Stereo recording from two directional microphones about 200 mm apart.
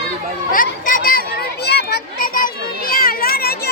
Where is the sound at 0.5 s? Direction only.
45° left (ahead or behind).